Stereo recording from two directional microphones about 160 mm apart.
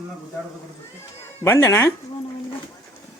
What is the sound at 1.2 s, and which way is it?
Speech, 15° left (ahead or behind).